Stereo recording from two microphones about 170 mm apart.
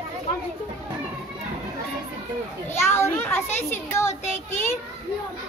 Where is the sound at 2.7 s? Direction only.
15° left (ahead or behind).